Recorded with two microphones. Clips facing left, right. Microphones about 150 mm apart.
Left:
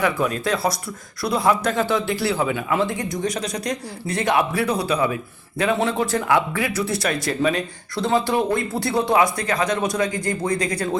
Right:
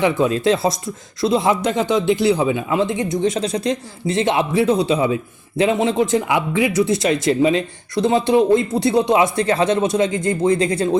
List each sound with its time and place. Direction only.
0.0 s speech: 25° right (ahead or behind)